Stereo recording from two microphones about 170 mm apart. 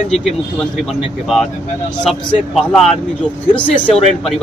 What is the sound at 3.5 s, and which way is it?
Speech, 5° left (ahead or behind).